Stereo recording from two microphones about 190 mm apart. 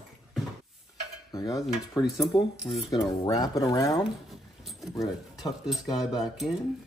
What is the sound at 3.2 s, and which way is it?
Speech, 20° left (ahead or behind).